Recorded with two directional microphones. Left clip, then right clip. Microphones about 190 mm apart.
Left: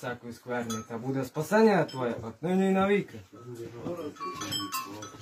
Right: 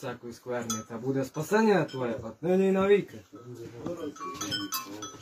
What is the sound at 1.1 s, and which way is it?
Speech, 15° left (ahead or behind).